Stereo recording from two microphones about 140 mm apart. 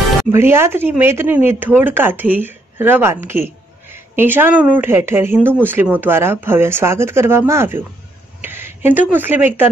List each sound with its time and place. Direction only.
0.3 s speech: 15° right (ahead or behind)